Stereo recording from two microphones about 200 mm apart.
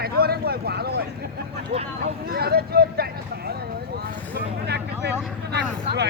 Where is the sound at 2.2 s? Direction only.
50° right (ahead or behind).